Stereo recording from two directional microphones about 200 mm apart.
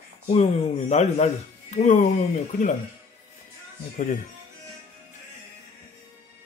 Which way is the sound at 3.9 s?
40° left (ahead or behind).